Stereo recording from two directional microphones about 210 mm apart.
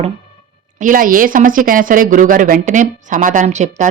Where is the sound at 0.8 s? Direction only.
40° right (ahead or behind).